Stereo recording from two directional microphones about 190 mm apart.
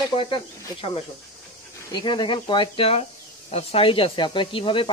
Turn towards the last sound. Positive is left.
turn(degrees=25)  # may be behind; listen again after turning